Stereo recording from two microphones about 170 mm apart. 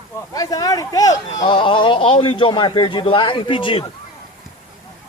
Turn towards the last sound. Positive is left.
turn(degrees=30)  # may be behind; listen again after turning